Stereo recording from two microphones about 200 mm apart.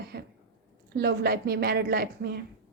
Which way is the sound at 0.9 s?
50° right (ahead or behind).